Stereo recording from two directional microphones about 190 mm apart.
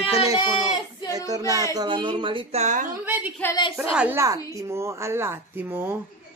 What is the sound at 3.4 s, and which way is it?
Speech, 10° left (ahead or behind).